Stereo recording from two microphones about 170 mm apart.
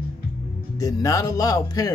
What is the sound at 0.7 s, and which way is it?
Speech, 20° left (ahead or behind).